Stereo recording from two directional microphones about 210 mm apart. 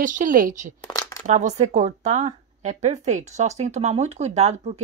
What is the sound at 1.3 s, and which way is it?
A woman's voice, 35° right (ahead or behind).